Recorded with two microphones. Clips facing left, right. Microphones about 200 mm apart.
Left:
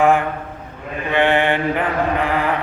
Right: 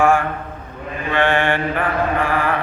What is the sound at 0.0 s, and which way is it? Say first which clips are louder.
Speech: left 1 dB; 20° left (ahead or behind).